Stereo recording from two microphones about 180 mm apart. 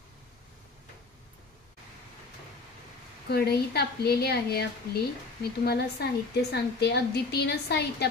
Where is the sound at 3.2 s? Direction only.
60° left (ahead or behind).